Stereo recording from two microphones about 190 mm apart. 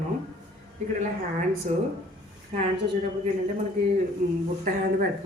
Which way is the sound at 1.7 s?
40° right (ahead or behind).